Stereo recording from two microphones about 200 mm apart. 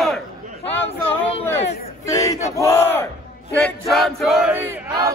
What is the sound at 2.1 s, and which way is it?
Battle cry, 15° left (ahead or behind).